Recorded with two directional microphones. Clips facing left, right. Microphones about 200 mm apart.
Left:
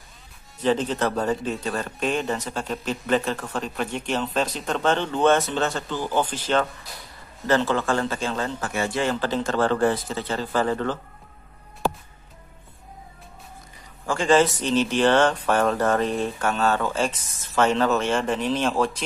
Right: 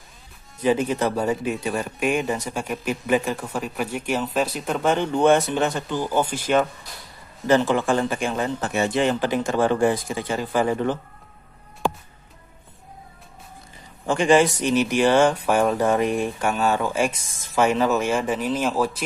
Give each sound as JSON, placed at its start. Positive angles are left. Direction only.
{"t": 0.6, "sound": "speech", "side_deg": -10}
{"t": 14.0, "sound": "speech", "side_deg": -15}